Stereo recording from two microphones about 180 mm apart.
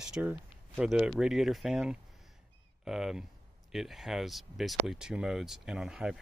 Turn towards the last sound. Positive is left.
turn(degrees=-5)  # may be behind; listen again after turning